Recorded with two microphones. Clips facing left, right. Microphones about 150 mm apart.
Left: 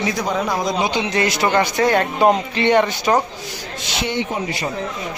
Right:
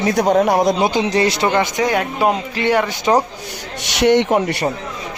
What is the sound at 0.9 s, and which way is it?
Speech, 35° right (ahead or behind).